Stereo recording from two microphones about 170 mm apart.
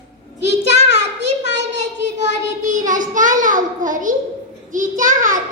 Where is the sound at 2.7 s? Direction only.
50° right (ahead or behind).